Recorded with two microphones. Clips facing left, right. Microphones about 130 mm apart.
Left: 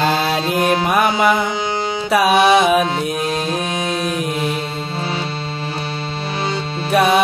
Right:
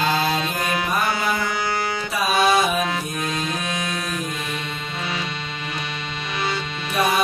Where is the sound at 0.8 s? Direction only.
70° left (ahead or behind).